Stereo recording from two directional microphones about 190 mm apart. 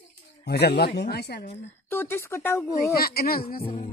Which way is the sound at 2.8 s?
55° left (ahead or behind).